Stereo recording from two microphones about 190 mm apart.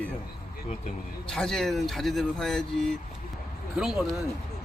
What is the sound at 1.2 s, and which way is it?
Speech, 5° left (ahead or behind).